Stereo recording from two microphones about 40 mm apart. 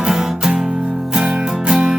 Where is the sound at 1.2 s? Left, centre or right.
Right.